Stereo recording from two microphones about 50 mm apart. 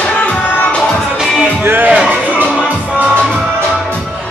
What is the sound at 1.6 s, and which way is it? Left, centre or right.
Music, right.